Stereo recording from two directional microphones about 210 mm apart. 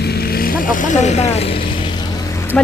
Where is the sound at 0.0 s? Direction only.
50° left (ahead or behind); by 1.7 s 25° left (ahead or behind).